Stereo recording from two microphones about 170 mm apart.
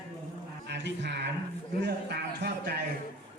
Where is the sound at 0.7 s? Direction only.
90° right.